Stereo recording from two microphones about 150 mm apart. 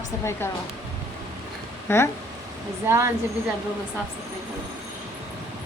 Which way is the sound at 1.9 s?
15° left (ahead or behind).